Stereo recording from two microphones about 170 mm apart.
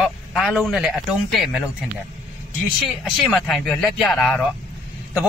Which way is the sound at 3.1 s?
Centre (ahead or behind).